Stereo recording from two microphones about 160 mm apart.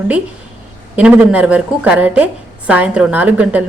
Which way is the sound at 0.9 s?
10° right (ahead or behind).